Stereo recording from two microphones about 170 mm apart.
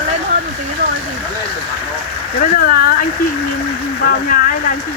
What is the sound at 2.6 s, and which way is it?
Speech, 60° left (ahead or behind).